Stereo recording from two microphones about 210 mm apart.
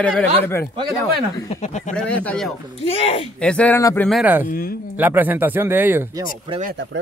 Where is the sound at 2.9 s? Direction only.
30° left (ahead or behind).